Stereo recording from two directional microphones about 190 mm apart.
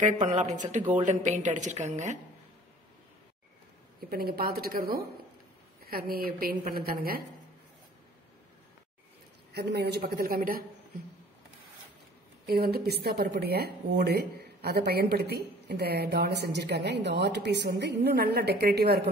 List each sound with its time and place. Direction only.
0.0 s a woman's voice: 40° right (ahead or behind)
4.1 s a woman's voice: 55° right (ahead or behind)
9.5 s speech: 60° right (ahead or behind)
12.4 s speech: 55° right (ahead or behind)